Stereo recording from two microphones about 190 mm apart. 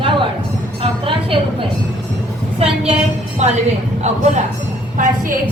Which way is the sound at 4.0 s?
40° right (ahead or behind).